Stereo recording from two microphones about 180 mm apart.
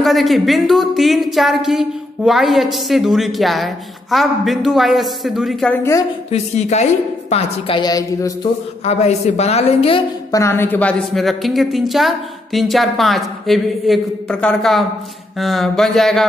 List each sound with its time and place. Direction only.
0.0 s a woman's voice: centre (ahead or behind)
5.8 s a woman's voice: 15° left (ahead or behind)
6.3 s a woman's voice: 40° left (ahead or behind); by 8.3 s 20° left (ahead or behind)
8.8 s a woman's voice: 35° left (ahead or behind)
10.3 s a woman's voice: 15° left (ahead or behind)